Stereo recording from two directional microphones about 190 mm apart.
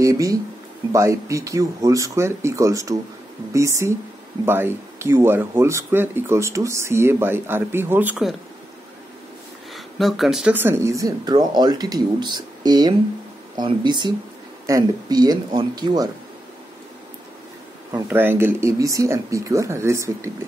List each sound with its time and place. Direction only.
0.0 s speech: 15° right (ahead or behind)
9.9 s speech: centre (ahead or behind); by 16.1 s 20° right (ahead or behind)
18.1 s speech: 10° right (ahead or behind)